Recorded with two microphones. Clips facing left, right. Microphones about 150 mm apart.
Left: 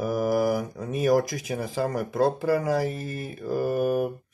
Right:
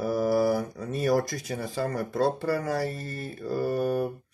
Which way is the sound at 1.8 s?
10° left (ahead or behind).